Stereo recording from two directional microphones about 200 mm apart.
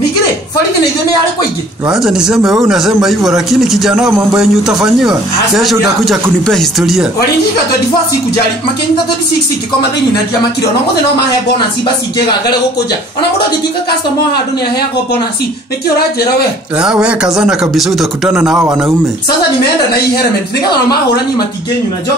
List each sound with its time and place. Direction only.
1.9 s a man's voice: 5° right (ahead or behind)
16.7 s a man's voice: 5° right (ahead or behind)